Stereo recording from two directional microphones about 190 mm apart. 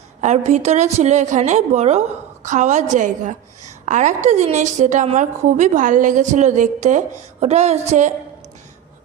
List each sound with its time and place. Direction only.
0.2 s a woman's voice: 35° right (ahead or behind)